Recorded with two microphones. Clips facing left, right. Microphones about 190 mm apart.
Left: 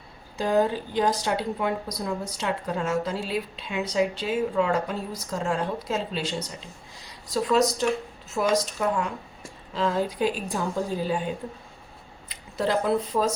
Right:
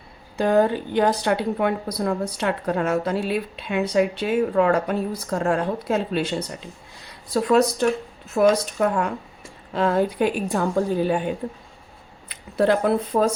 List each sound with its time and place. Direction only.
0.3 s speech: 60° right (ahead or behind)
12.3 s speech: 55° right (ahead or behind)